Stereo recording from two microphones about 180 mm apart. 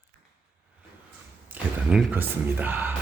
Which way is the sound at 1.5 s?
10° right (ahead or behind).